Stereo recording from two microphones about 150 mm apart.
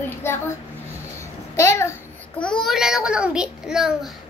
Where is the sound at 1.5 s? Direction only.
20° left (ahead or behind).